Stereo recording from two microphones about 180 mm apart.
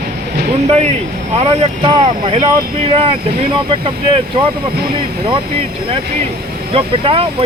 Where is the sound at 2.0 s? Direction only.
25° right (ahead or behind).